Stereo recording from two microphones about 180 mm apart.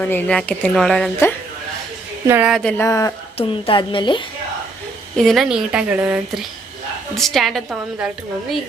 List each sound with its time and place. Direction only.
0.0 s a woman's voice: 10° left (ahead or behind)
2.2 s speech: 10° right (ahead or behind)
2.5 s a woman's voice: centre (ahead or behind)
2.7 s speech: 15° left (ahead or behind)
3.3 s a woman's voice: 30° left (ahead or behind)
5.1 s a woman's voice: centre (ahead or behind)